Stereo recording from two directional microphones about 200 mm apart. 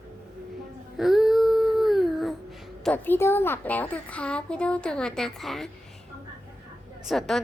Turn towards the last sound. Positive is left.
turn(degrees=0)  # may be behind; listen again after turning